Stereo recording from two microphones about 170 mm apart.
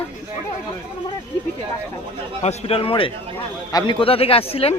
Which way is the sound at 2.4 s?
35° left (ahead or behind).